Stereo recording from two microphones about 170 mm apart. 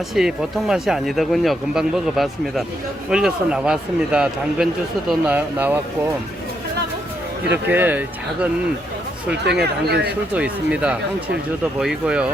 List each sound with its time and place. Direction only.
0.1 s speech: centre (ahead or behind)
7.5 s speech: 10° right (ahead or behind)
9.4 s speech: 75° right (ahead or behind)
10.3 s speech: 5° right (ahead or behind)